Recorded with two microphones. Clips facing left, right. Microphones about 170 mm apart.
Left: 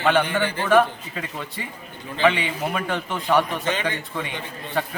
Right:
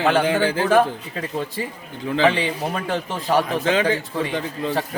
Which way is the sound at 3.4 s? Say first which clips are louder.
Right 6 dB; 90° right.